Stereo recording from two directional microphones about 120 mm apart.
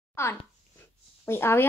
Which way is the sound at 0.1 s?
20° left (ahead or behind).